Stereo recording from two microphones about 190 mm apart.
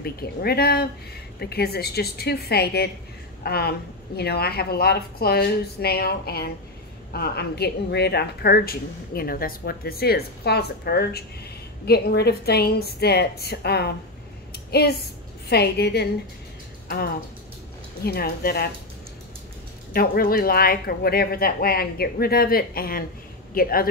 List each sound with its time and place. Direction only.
0.0 s a woman's voice: 55° left (ahead or behind)
14.5 s a sound: 55° left (ahead or behind)
15.4 s a woman's voice: 60° left (ahead or behind)
18.0 s a woman's voice: 55° left (ahead or behind)
19.9 s speech: 50° left (ahead or behind)